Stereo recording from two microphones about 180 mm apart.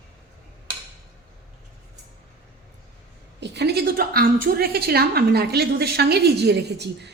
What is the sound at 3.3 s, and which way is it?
A woman's voice, 70° right (ahead or behind).